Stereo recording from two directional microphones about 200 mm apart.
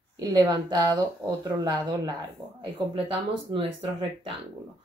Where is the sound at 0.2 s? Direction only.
20° right (ahead or behind).